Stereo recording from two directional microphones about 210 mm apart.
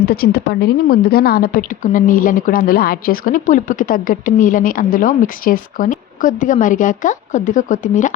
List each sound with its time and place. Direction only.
0.0 s a woman's voice: 45° left (ahead or behind)